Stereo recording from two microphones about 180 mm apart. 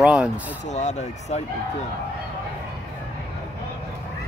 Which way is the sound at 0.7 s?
40° left (ahead or behind).